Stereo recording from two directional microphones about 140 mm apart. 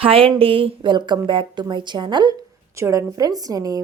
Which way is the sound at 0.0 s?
40° right (ahead or behind).